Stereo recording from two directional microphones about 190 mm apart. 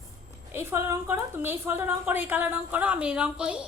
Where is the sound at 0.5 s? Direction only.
10° right (ahead or behind).